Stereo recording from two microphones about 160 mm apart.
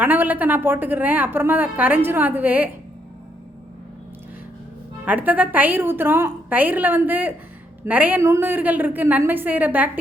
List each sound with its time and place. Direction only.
0.0 s a woman's voice: 10° right (ahead or behind)
5.0 s a woman's voice: 10° right (ahead or behind)